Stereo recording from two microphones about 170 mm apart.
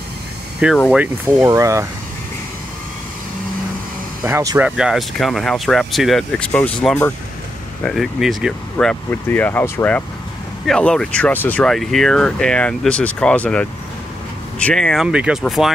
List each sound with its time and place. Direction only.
0.6 s speech: 5° right (ahead or behind)
4.2 s speech: 15° right (ahead or behind)
4.6 s speech: 5° right (ahead or behind)